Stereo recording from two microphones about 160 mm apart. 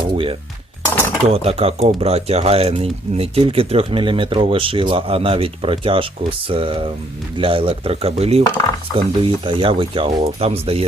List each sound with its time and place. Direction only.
0.0 s speech: 30° right (ahead or behind)